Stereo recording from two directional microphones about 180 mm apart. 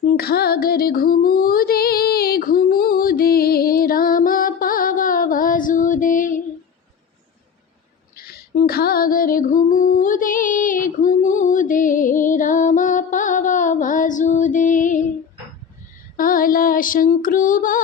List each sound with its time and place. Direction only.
0.1 s music: 60° left (ahead or behind)
8.6 s music: 60° left (ahead or behind)
16.1 s child singing: 50° left (ahead or behind)